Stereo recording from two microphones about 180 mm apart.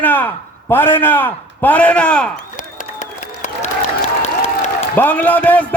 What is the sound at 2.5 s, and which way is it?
Applause, 45° left (ahead or behind).